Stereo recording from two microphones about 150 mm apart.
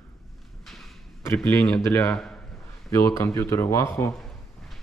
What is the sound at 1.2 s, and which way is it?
Speech, 20° left (ahead or behind).